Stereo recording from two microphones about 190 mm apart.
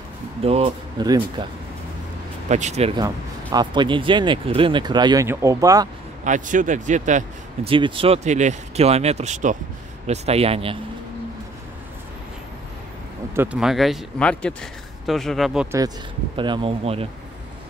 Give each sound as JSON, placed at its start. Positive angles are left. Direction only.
{"t": 0.4, "sound": "speech", "side_deg": -30}
{"t": 2.5, "sound": "speech", "side_deg": -35}
{"t": 3.5, "sound": "speech", "side_deg": -25}
{"t": 6.2, "sound": "speech", "side_deg": -40}
{"t": 7.7, "sound": "speech", "side_deg": -30}
{"t": 13.3, "sound": "a man's voice", "side_deg": -10}
{"t": 16.3, "sound": "speech", "side_deg": -25}